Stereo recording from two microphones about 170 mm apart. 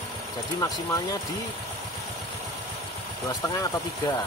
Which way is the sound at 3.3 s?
25° left (ahead or behind).